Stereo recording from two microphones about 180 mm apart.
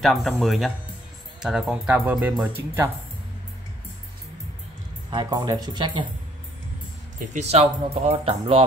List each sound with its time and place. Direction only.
0.0 s speech: centre (ahead or behind)
5.1 s speech: 25° right (ahead or behind)
7.3 s speech: 35° right (ahead or behind)